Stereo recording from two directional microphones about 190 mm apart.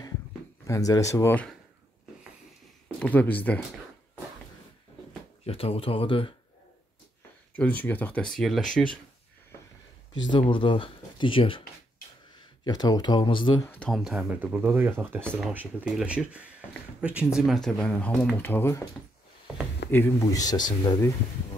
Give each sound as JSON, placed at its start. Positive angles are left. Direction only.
{"t": 0.7, "sound": "speech", "side_deg": 20}
{"t": 3.0, "sound": "speech", "side_deg": 10}
{"t": 5.4, "sound": "speech", "side_deg": 30}
{"t": 7.5, "sound": "speech", "side_deg": 10}
{"t": 10.3, "sound": "speech", "side_deg": 25}
{"t": 12.6, "sound": "speech", "side_deg": 20}
{"t": 13.7, "sound": "speech", "side_deg": 5}
{"t": 19.9, "sound": "speech", "side_deg": 15}